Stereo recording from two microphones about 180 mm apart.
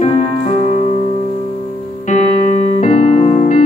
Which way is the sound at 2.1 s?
40° left (ahead or behind).